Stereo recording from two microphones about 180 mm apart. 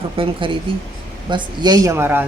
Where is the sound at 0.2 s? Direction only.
30° right (ahead or behind).